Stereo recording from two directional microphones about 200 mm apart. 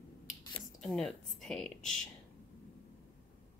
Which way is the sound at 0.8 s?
Centre (ahead or behind).